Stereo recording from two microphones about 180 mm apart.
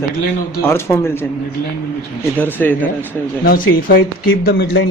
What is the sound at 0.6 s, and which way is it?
Speech, 15° left (ahead or behind).